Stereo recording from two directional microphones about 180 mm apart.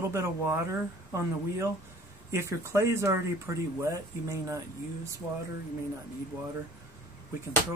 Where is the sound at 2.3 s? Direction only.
15° right (ahead or behind).